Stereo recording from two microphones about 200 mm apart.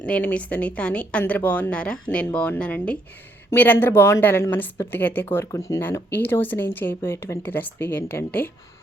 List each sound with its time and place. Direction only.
0.0 s speech: 5° left (ahead or behind)